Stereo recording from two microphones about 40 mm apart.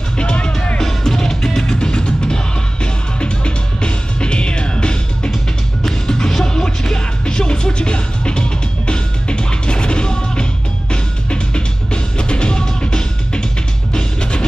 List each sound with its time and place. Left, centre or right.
0.2 s music: left
0.7 s music: centre